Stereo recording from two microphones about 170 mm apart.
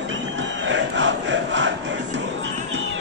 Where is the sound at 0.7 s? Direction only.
90° right.